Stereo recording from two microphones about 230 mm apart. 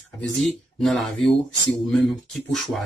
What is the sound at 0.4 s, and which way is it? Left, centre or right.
Speech, centre.